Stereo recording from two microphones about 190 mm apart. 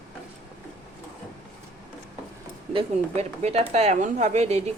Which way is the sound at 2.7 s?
30° right (ahead or behind).